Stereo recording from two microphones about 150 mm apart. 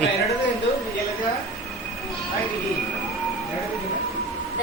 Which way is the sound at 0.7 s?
45° left (ahead or behind).